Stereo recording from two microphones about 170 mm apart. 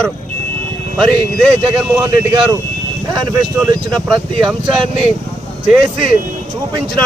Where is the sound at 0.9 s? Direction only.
Centre (ahead or behind).